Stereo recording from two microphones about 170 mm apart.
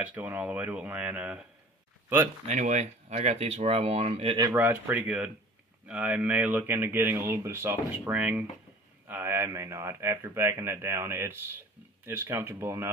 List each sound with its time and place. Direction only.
0.0 s speech: 10° right (ahead or behind)
2.4 s speech: 45° right (ahead or behind)
4.4 s speech: 15° right (ahead or behind)